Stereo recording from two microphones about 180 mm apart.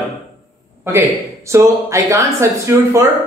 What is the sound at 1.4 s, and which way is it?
Speech, 15° right (ahead or behind).